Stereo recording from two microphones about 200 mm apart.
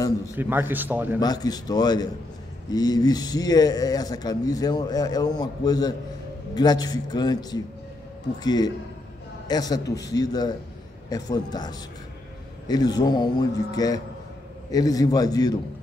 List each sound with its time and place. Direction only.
0.4 s a man's voice: 10° right (ahead or behind)
1.2 s a man's voice: 20° left (ahead or behind)